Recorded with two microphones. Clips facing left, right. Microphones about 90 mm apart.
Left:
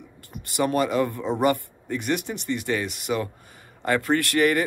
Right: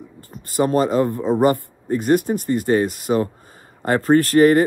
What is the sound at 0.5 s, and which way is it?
Speech, 35° right (ahead or behind).